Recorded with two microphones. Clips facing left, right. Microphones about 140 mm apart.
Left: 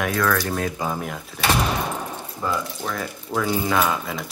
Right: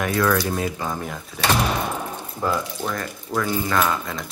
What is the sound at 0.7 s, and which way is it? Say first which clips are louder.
Speech: left 1 dB; 10° left (ahead or behind).